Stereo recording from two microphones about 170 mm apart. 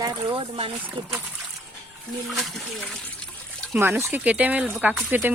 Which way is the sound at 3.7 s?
15° right (ahead or behind).